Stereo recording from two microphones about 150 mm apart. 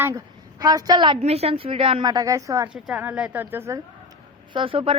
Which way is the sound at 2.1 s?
25° right (ahead or behind).